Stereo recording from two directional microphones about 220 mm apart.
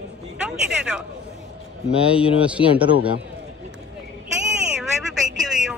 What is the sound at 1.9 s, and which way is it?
A man's voice, 5° right (ahead or behind).